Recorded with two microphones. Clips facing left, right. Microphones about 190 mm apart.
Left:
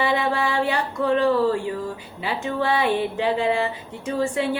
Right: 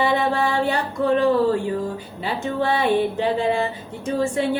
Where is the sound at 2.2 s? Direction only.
45° right (ahead or behind).